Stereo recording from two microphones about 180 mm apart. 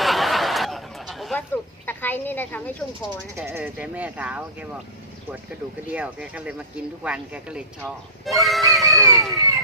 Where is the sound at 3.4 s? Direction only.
15° right (ahead or behind).